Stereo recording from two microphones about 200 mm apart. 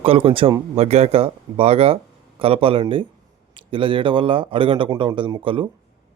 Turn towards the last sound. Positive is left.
turn(degrees=-25)  # may be behind; listen again after turning